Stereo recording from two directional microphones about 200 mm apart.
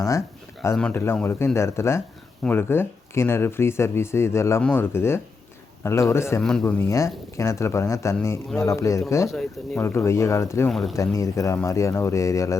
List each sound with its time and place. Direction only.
0.6 s speech: 10° left (ahead or behind)
10.7 s speech: centre (ahead or behind)
10.9 s speech: 15° left (ahead or behind)